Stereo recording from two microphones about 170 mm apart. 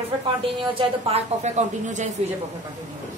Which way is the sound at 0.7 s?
35° right (ahead or behind).